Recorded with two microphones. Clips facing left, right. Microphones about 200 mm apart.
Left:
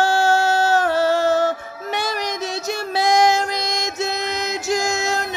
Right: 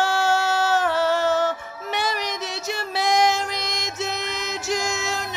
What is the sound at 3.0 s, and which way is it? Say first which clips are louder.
Music: left 4 dB; 45° left (ahead or behind).